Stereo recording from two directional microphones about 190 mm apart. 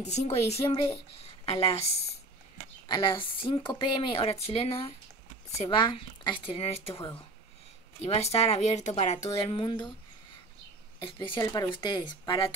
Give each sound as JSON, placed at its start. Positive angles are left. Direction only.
{"t": 0.0, "sound": "a woman's voice", "side_deg": 35}
{"t": 11.1, "sound": "a woman's voice", "side_deg": 25}